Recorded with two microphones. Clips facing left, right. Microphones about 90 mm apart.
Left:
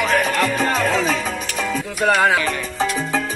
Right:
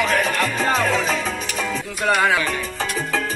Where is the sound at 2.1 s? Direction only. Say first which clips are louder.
Left 2 dB; 30° left (ahead or behind).